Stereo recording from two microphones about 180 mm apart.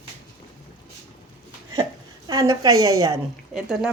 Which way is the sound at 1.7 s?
20° right (ahead or behind).